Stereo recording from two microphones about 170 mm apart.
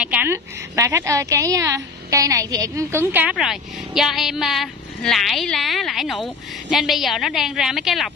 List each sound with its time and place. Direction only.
0.0 s a woman's voice: 10° right (ahead or behind)